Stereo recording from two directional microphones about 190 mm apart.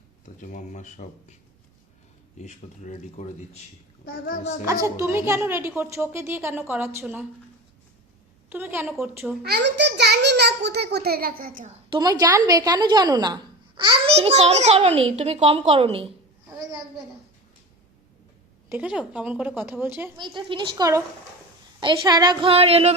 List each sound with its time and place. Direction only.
0.3 s speech: 40° left (ahead or behind)
2.4 s speech: 35° left (ahead or behind)
4.0 s a child's voice: 50° left (ahead or behind)
4.6 s a woman's voice: 15° right (ahead or behind)
8.4 s a woman's voice: 10° right (ahead or behind)
9.4 s a child's voice: 60° right (ahead or behind)
11.9 s a woman's voice: 20° right (ahead or behind)
18.7 s a woman's voice: 5° right (ahead or behind)
20.1 s a woman's voice: 25° right (ahead or behind)